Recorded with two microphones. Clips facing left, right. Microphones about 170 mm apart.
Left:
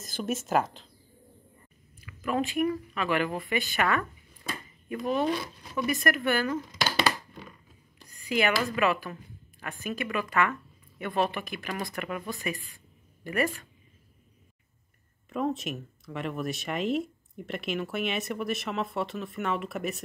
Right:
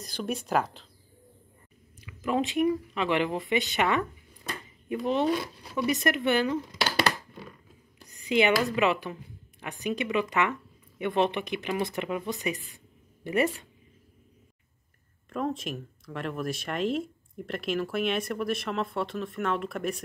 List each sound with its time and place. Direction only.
0.0 s speech: centre (ahead or behind)
2.0 s speech: 20° right (ahead or behind)
8.1 s speech: 20° right (ahead or behind)
15.2 s speech: 5° left (ahead or behind)